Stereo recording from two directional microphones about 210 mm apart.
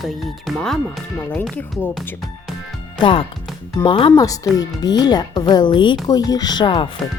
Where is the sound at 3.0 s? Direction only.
25° left (ahead or behind).